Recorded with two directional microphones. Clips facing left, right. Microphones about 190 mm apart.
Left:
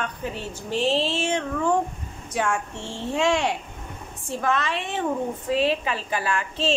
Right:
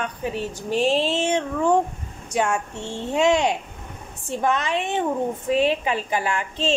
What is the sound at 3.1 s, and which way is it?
A woman's voice, 20° right (ahead or behind).